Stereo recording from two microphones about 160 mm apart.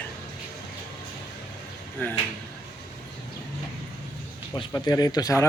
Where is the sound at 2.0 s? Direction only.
10° left (ahead or behind).